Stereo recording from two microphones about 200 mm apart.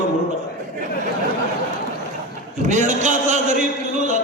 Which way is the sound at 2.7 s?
35° right (ahead or behind).